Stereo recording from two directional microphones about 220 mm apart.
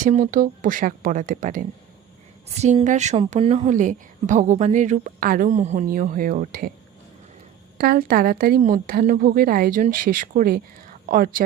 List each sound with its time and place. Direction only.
0.0 s a woman's voice: 35° right (ahead or behind)
7.8 s a woman's voice: 40° right (ahead or behind)